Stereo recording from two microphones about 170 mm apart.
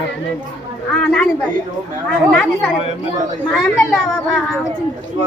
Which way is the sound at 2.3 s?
5° left (ahead or behind).